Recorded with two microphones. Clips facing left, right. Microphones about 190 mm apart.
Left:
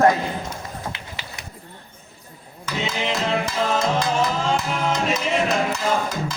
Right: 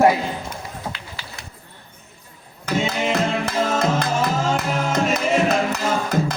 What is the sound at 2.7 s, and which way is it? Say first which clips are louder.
Music: right 4 dB; 50° right (ahead or behind).